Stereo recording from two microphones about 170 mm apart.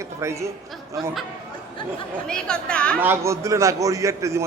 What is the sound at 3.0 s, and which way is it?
A man's voice, 15° right (ahead or behind).